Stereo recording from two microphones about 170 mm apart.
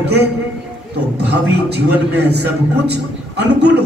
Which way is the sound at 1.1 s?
75° right (ahead or behind).